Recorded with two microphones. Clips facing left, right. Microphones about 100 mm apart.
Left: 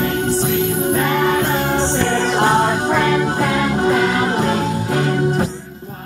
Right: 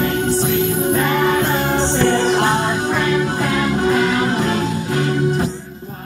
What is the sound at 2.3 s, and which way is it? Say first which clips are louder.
Music: left 1 dB; 40° left (ahead or behind).